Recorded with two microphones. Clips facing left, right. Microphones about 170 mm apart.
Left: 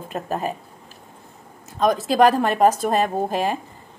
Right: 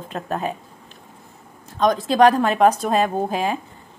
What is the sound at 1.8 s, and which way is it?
A woman's voice, 5° left (ahead or behind).